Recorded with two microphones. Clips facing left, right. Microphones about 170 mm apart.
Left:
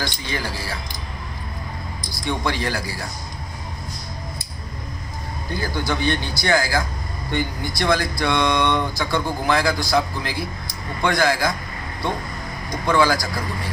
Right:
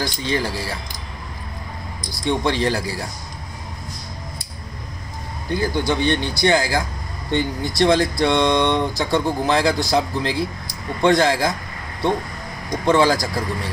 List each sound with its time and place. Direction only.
0.3 s speech: 25° right (ahead or behind)
2.2 s speech: 25° right (ahead or behind)
5.5 s speech: 20° right (ahead or behind)
12.8 s speech: 25° right (ahead or behind)